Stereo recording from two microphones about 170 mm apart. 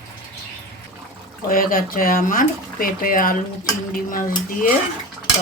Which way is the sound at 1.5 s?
55° left (ahead or behind).